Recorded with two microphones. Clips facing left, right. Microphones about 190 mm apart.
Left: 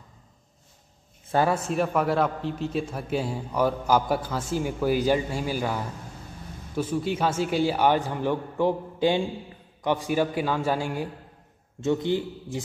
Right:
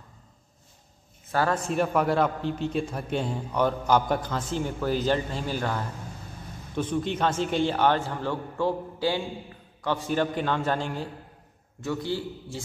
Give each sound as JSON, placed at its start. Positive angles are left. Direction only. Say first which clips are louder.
{"t": 1.5, "sound": "a man's voice", "louder": "even", "side_deg": 0}
{"t": 11.8, "sound": "a man's voice", "louder": "left 5 dB", "side_deg": 20}